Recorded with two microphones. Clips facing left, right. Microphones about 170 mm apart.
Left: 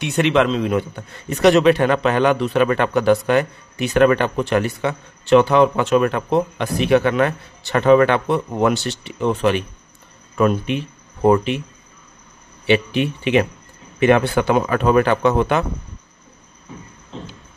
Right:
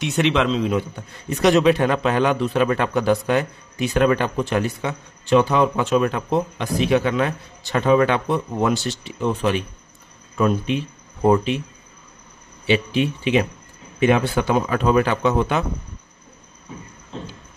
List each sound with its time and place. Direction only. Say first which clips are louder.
0.2 s speech: left 3 dB; 55° left (ahead or behind)
1.5 s a man's voice: left 2 dB; centre (ahead or behind)
2.8 s speech: left 3 dB; 65° left (ahead or behind)
12.6 s speech: left 2 dB; 60° left (ahead or behind)